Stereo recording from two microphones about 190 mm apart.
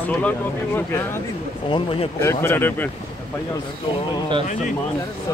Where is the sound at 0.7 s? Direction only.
15° left (ahead or behind).